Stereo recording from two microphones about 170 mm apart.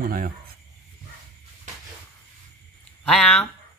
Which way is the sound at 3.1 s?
Centre (ahead or behind).